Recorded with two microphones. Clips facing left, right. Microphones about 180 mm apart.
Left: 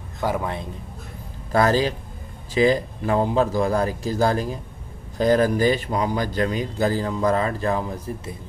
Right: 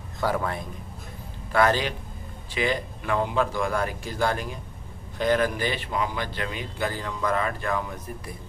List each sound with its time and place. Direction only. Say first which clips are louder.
0.2 s a man's voice: left 2 dB; 20° left (ahead or behind)
1.5 s a man's voice: left 3 dB; 35° left (ahead or behind)